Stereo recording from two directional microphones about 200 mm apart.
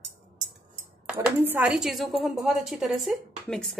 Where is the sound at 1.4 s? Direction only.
10° right (ahead or behind).